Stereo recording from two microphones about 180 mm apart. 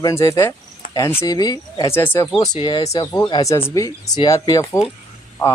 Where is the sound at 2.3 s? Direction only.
25° left (ahead or behind).